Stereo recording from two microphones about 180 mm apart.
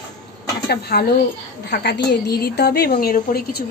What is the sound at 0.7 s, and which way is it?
A woman's voice, 65° left (ahead or behind).